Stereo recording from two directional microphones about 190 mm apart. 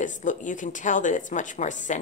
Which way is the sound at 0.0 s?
40° left (ahead or behind).